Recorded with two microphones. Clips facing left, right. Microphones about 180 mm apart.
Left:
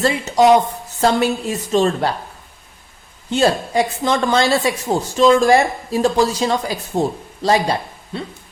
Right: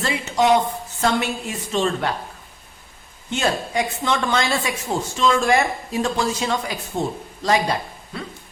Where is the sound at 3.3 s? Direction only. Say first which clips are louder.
Left 6 dB; 35° left (ahead or behind).